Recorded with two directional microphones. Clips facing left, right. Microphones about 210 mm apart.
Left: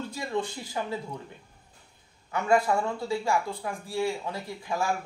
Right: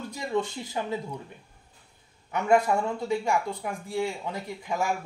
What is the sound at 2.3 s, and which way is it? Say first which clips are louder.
Speech: right 1 dB; 20° right (ahead or behind).